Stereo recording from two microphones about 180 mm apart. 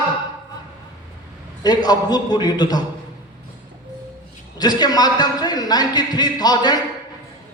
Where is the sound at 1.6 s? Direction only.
20° left (ahead or behind).